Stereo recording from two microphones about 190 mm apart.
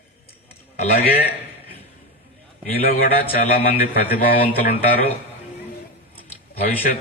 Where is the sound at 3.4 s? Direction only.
50° left (ahead or behind).